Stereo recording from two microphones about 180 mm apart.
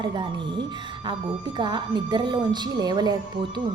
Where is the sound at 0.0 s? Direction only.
25° right (ahead or behind).